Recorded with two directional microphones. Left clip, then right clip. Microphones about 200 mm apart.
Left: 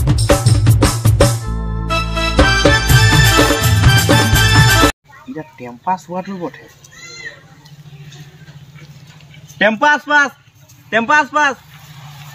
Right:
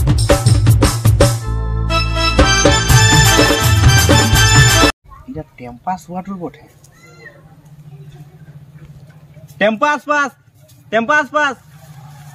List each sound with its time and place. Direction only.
0.0 s music: centre (ahead or behind)
5.6 s a sound: 35° right (ahead or behind)
9.6 s a man's voice: 35° right (ahead or behind)